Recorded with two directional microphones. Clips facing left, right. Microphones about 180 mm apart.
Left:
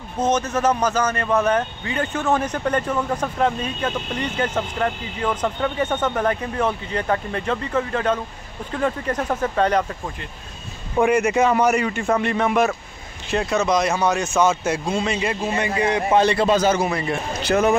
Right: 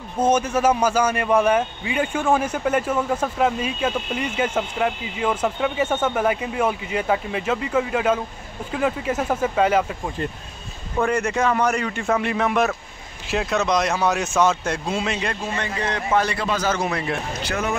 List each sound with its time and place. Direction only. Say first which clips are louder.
0.2 s speech: right 1 dB; 10° right (ahead or behind)
11.0 s speech: left 4 dB; 10° left (ahead or behind)
15.5 s a man's voice: left 5 dB; 10° left (ahead or behind)
16.7 s speech: left 2 dB; centre (ahead or behind)